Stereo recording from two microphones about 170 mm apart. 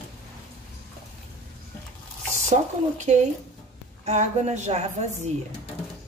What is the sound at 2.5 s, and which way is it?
A woman's voice, 45° right (ahead or behind).